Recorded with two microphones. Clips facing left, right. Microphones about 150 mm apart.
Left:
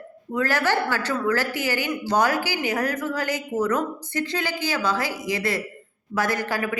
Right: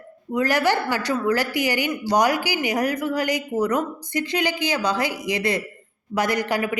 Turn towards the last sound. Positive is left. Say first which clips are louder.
# right 3 dB
turn(degrees=-20)  # may be behind; listen again after turning